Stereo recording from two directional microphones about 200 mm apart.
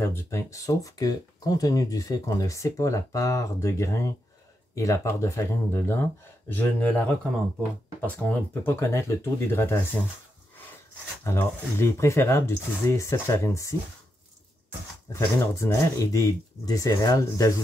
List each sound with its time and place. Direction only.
0.0 s speech: 10° left (ahead or behind)
8.2 s speech: 5° left (ahead or behind)
11.2 s speech: 15° left (ahead or behind)
15.1 s speech: 15° left (ahead or behind)